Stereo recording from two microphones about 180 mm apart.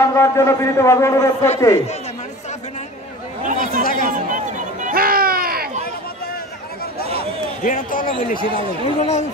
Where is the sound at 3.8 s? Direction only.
50° left (ahead or behind).